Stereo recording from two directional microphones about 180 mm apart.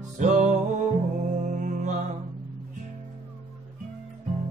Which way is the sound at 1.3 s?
45° right (ahead or behind).